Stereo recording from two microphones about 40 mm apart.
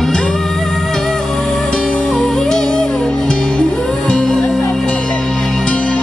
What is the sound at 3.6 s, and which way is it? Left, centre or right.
Music, left.